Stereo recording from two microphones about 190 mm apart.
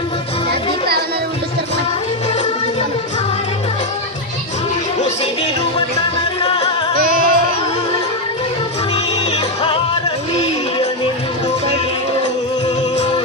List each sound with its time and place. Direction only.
6.9 s music: 50° right (ahead or behind)